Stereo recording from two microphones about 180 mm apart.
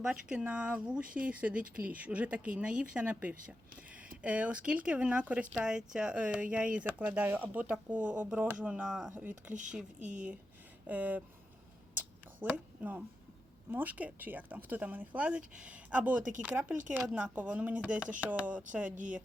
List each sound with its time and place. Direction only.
0.0 s speech: 5° right (ahead or behind)
9.5 s speech: 45° right (ahead or behind)
10.1 s speech: 5° right (ahead or behind)
11.9 s a sound: 10° right (ahead or behind)
13.7 s speech: 10° right (ahead or behind)